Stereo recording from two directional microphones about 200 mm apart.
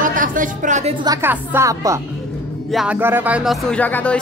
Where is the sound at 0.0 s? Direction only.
40° right (ahead or behind).